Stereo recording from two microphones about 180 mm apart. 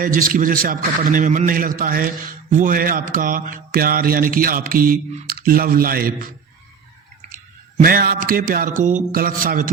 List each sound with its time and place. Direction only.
0.0 s mantra: 50° right (ahead or behind)
7.8 s mantra: 55° right (ahead or behind)